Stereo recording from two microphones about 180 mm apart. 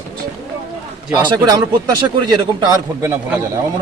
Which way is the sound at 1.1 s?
20° right (ahead or behind).